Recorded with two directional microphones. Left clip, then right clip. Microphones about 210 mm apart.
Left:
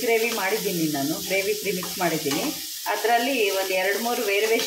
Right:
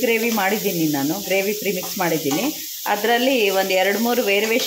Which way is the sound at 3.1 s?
45° right (ahead or behind).